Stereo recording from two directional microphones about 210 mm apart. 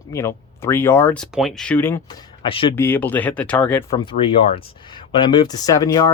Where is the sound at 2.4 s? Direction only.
25° left (ahead or behind).